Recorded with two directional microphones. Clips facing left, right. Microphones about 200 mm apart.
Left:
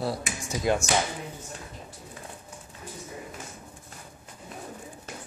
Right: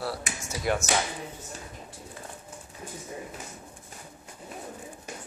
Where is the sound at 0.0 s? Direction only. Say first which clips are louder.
Left 3 dB; 15° left (ahead or behind).